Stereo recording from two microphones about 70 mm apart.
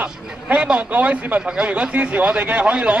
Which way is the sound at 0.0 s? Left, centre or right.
Centre.